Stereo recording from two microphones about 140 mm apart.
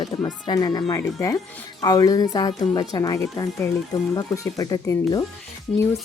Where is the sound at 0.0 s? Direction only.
30° left (ahead or behind).